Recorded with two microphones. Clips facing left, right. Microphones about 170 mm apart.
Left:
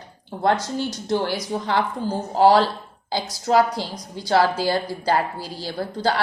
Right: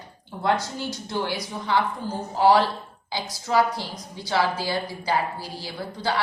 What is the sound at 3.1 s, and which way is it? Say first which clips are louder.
A woman's voice: left 4 dB; 40° left (ahead or behind).